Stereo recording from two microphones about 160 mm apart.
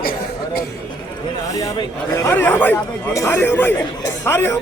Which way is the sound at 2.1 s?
15° left (ahead or behind).